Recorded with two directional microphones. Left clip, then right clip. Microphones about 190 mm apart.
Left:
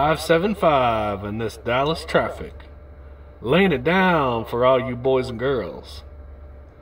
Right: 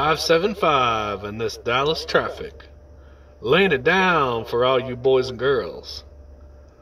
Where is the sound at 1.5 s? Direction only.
15° right (ahead or behind).